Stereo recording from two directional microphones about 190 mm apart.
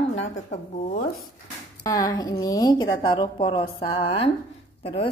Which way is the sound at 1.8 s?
20° left (ahead or behind).